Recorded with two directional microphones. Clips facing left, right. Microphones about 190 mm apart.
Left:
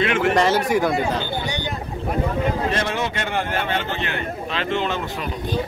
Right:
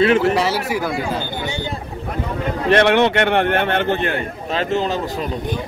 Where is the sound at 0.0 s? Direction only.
35° right (ahead or behind).